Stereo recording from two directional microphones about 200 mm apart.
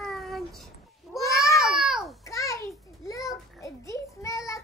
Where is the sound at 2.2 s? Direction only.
15° left (ahead or behind).